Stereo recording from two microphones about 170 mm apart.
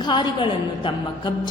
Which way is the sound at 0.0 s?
25° left (ahead or behind).